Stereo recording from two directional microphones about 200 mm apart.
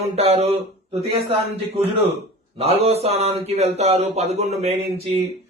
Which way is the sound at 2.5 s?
30° right (ahead or behind).